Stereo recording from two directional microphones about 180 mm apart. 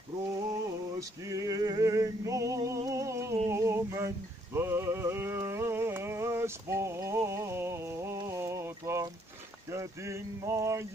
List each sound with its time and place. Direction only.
0.5 s male singing: 20° right (ahead or behind)
4.6 s music: 15° right (ahead or behind)
9.7 s a sound: 15° right (ahead or behind)